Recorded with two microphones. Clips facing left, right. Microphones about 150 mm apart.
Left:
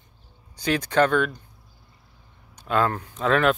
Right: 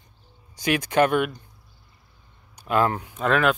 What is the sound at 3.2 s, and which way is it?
Speech, 5° right (ahead or behind).